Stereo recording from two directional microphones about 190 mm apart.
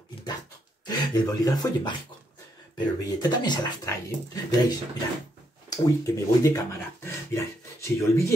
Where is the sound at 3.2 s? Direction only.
20° left (ahead or behind).